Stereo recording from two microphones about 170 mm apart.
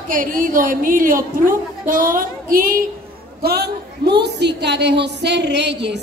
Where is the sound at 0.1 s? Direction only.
55° right (ahead or behind).